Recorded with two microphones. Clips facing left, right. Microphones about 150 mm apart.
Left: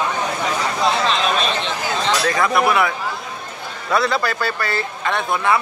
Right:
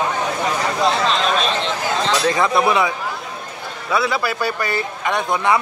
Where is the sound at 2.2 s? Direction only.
20° right (ahead or behind).